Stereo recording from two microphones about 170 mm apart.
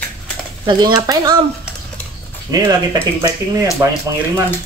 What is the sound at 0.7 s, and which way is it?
Speech, 25° right (ahead or behind).